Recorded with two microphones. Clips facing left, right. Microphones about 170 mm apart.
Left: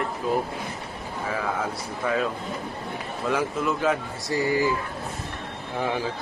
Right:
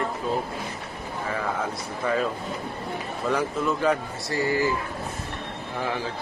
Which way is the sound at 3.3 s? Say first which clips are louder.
Even; centre (ahead or behind).